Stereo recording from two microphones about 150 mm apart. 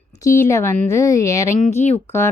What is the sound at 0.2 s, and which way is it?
Speech, 20° left (ahead or behind).